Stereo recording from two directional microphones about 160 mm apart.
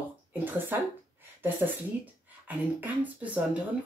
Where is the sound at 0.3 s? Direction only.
10° right (ahead or behind).